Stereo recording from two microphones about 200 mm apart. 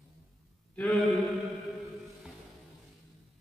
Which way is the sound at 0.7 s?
Centre (ahead or behind).